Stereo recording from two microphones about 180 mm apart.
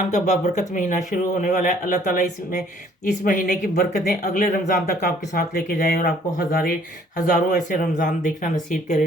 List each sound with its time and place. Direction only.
0.1 s speech: 40° left (ahead or behind)